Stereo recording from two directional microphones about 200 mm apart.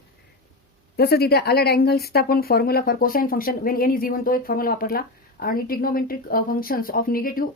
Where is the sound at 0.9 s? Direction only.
50° left (ahead or behind).